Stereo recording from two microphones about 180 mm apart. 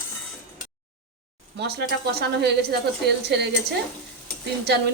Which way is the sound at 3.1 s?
65° right (ahead or behind).